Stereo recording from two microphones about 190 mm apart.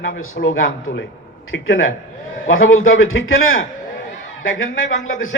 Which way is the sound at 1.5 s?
90° left.